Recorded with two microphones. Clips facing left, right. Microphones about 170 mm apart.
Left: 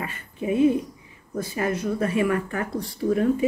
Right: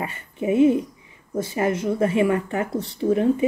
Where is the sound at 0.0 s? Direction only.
25° right (ahead or behind).